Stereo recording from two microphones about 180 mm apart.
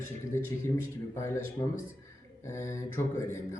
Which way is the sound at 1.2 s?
15° left (ahead or behind).